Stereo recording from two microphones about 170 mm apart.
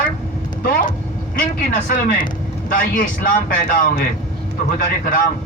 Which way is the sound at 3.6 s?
55° left (ahead or behind).